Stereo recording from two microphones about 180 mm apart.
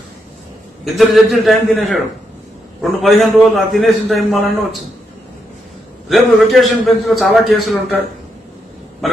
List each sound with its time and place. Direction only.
0.8 s a man's voice: centre (ahead or behind)
6.0 s a man's voice: centre (ahead or behind)